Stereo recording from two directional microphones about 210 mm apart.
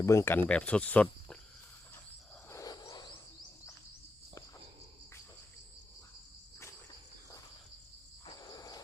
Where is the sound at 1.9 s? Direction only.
10° left (ahead or behind).